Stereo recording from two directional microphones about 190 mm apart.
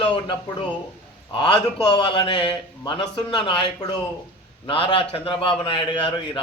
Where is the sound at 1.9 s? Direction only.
25° left (ahead or behind).